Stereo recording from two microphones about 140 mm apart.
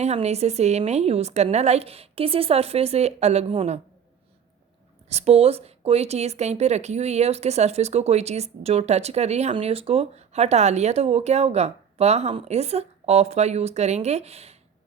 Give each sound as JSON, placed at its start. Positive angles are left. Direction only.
{"t": 0.0, "sound": "speech", "side_deg": -50}
{"t": 5.0, "sound": "speech", "side_deg": -50}